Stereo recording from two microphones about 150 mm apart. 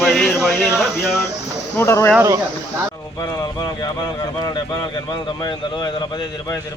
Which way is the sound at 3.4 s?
30° left (ahead or behind).